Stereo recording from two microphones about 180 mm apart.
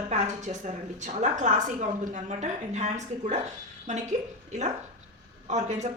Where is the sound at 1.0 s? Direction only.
40° right (ahead or behind).